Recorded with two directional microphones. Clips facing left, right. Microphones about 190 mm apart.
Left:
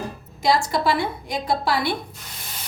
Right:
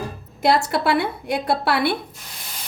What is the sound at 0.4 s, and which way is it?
A woman's voice, 65° right (ahead or behind).